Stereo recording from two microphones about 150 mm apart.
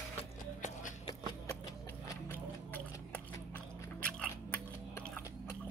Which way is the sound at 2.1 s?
10° left (ahead or behind).